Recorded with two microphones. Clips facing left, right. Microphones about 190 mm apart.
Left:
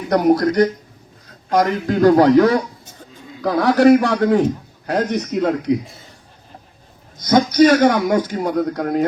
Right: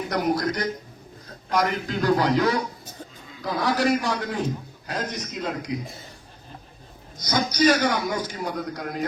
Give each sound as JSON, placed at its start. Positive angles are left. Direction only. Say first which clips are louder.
{"t": 0.1, "sound": "a man's voice", "louder": "left 11 dB", "side_deg": 50}
{"t": 7.2, "sound": "a man's voice", "louder": "left 10 dB", "side_deg": 55}